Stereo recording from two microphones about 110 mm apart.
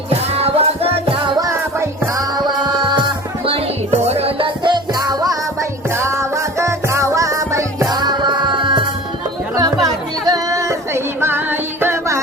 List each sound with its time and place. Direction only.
0.1 s music: 65° right (ahead or behind)
1.4 s music: 25° right (ahead or behind)
5.9 s music: 25° right (ahead or behind); by 8.8 s 45° right (ahead or behind)
9.6 s a sound: 35° right (ahead or behind)